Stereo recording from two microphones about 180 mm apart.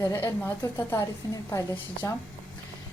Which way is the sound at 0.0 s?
15° left (ahead or behind).